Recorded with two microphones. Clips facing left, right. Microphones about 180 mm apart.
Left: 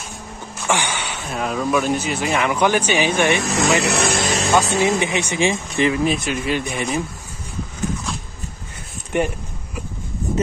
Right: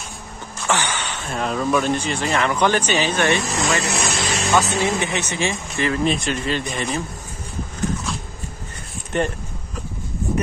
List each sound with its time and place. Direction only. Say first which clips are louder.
0.7 s speech: left 1 dB; 10° left (ahead or behind)
3.8 s speech: left 4 dB; 60° left (ahead or behind)
4.6 s speech: left 2 dB; 15° left (ahead or behind)
6.0 s speech: left 1 dB; 5° left (ahead or behind)
9.1 s speech: left 1 dB; 10° left (ahead or behind)